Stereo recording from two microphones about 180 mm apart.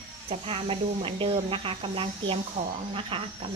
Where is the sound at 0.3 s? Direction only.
30° right (ahead or behind).